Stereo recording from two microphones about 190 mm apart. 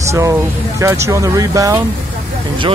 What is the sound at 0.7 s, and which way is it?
Speech, 15° right (ahead or behind).